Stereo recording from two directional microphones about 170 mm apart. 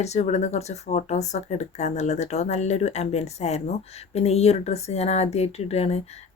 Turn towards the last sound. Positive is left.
turn(degrees=40)  # may be behind; listen again after turning